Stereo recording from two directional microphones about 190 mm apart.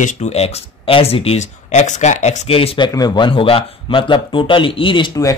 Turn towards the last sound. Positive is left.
turn(degrees=20)  # may be behind; listen again after turning